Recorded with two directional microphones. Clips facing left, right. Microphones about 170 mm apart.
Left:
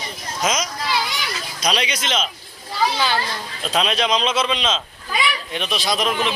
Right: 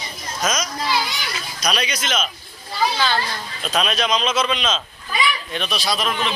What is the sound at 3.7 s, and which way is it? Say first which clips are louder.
A man's voice: left 1 dB; 25° left (ahead or behind).